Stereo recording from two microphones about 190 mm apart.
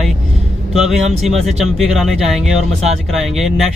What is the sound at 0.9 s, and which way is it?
Speech, 35° right (ahead or behind).